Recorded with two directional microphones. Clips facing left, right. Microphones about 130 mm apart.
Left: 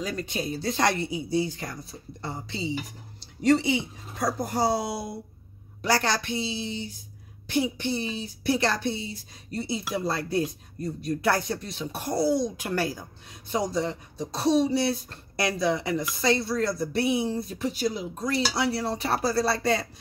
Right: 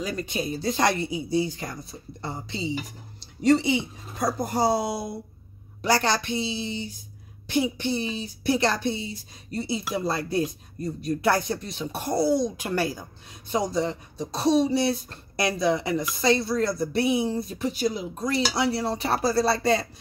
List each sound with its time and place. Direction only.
0.0 s speech: 10° right (ahead or behind)